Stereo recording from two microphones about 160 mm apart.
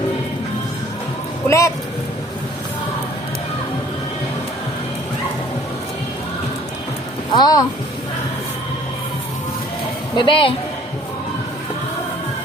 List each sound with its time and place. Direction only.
1.5 s speech: 20° left (ahead or behind)
7.3 s speech: 25° left (ahead or behind)
10.2 s speech: 30° left (ahead or behind)